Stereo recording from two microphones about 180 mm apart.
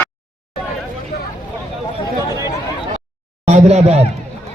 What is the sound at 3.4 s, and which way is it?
Speech, 35° right (ahead or behind).